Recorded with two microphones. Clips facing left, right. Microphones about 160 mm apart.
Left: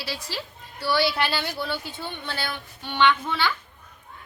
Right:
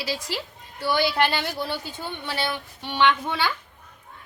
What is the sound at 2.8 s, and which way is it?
Speech, 15° right (ahead or behind).